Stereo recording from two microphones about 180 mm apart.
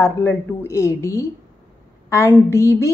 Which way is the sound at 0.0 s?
10° left (ahead or behind).